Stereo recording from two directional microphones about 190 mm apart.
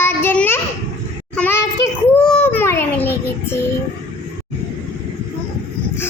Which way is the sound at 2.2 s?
5° left (ahead or behind).